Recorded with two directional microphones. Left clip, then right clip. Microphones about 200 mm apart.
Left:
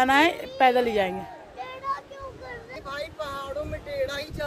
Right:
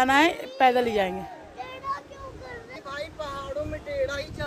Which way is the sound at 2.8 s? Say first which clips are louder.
Left 1 dB; 40° left (ahead or behind).